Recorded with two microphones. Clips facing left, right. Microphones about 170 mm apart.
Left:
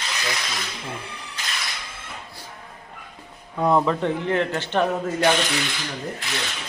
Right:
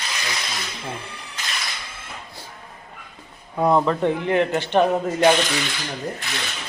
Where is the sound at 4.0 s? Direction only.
15° right (ahead or behind).